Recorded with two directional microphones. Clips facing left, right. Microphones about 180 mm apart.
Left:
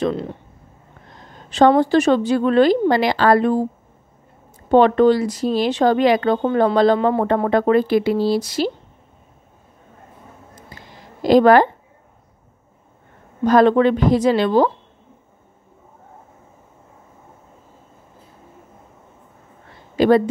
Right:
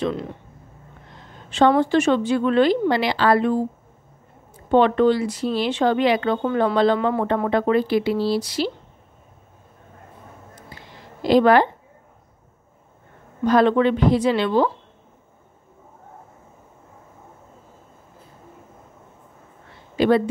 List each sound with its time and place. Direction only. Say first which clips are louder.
0.0 s speech: left 3 dB; 35° left (ahead or behind)
1.8 s speech: left 3 dB; 40° left (ahead or behind)
4.6 s speech: left 3 dB; 40° left (ahead or behind)
11.2 s a woman's voice: left 3 dB; 45° left (ahead or behind)
13.5 s speech: left 3 dB; 45° left (ahead or behind)
20.0 s speech: left 3 dB; 40° left (ahead or behind)